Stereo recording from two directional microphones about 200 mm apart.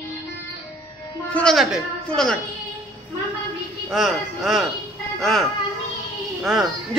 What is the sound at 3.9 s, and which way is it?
A man's voice, centre (ahead or behind).